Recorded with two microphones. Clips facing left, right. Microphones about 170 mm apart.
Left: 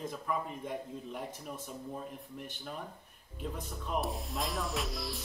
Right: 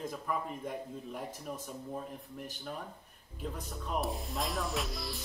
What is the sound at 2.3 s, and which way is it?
Music, centre (ahead or behind).